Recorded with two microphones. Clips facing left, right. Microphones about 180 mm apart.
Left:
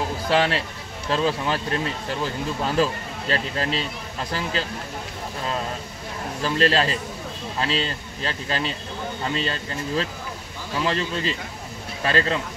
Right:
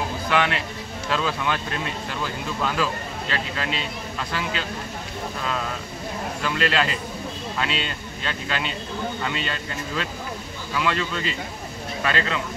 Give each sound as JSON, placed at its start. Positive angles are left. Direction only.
{"t": 0.3, "sound": "speech", "side_deg": 35}
{"t": 2.6, "sound": "speech", "side_deg": 35}
{"t": 6.4, "sound": "speech", "side_deg": 35}